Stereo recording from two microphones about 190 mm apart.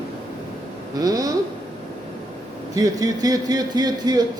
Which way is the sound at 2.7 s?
20° right (ahead or behind).